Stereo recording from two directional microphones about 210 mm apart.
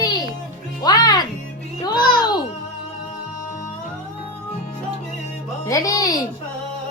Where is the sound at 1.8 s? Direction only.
20° left (ahead or behind).